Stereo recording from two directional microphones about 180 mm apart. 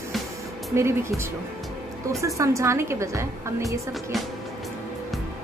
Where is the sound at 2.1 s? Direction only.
15° right (ahead or behind).